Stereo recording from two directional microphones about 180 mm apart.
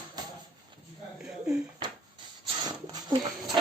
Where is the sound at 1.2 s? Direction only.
5° right (ahead or behind).